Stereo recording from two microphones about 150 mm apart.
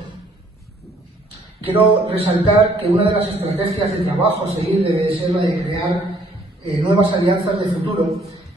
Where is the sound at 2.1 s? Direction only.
40° right (ahead or behind).